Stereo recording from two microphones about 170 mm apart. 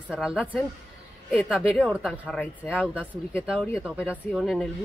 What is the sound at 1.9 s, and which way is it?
Speech, 5° right (ahead or behind).